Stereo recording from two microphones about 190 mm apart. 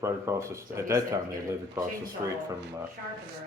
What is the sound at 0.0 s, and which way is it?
Speech, 15° right (ahead or behind).